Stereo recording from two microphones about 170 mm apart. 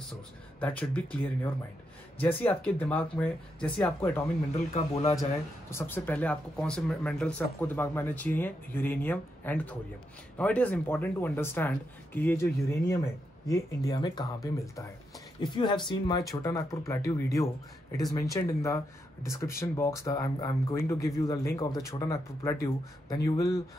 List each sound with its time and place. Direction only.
0.6 s speech: 10° left (ahead or behind)
4.7 s speech: 40° left (ahead or behind)
5.1 s speech: 20° left (ahead or behind)